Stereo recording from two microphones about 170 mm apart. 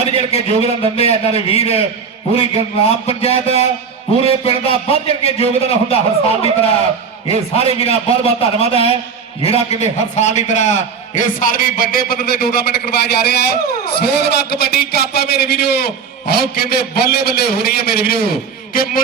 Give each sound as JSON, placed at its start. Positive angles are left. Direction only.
{"t": 0.1, "sound": "a man's voice", "side_deg": 35}